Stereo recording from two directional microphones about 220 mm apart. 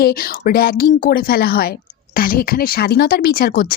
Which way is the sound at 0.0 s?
45° left (ahead or behind).